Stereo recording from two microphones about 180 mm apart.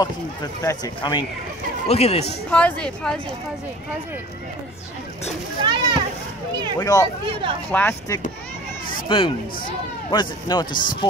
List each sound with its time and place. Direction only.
0.6 s speech: 20° left (ahead or behind)
1.9 s speech: 35° left (ahead or behind)
2.5 s a woman's voice: 5° left (ahead or behind)
5.6 s a child's voice: 25° right (ahead or behind)
6.8 s speech: 20° left (ahead or behind)
9.1 s speech: 30° left (ahead or behind)
10.7 s speech: 50° left (ahead or behind)